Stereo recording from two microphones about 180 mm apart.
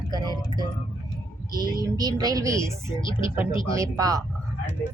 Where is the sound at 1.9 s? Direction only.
20° right (ahead or behind).